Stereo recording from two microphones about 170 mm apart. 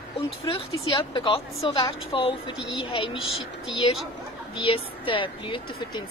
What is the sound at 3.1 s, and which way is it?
Speech, centre (ahead or behind).